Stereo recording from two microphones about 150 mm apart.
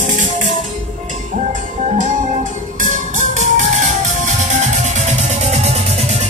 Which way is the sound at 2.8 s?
55° right (ahead or behind).